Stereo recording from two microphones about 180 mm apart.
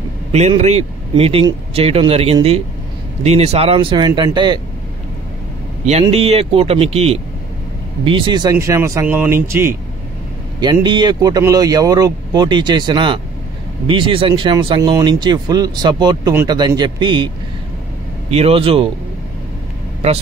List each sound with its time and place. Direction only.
0.3 s speech: 35° right (ahead or behind)
5.9 s speech: 35° right (ahead or behind); by 9.8 s 15° right (ahead or behind)
10.6 s speech: 25° right (ahead or behind)
18.3 s speech: 30° right (ahead or behind)